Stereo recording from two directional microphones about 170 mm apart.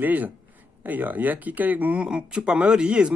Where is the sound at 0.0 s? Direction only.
10° right (ahead or behind).